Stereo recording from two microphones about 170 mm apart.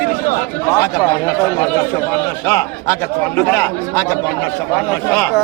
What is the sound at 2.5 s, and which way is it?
Speech, 15° left (ahead or behind).